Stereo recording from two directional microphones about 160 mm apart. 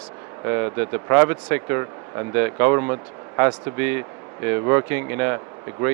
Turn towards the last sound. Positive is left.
turn(degrees=-15)  # may be behind; listen again after turning